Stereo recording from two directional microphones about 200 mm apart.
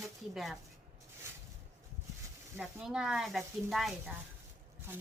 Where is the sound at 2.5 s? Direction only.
5° right (ahead or behind).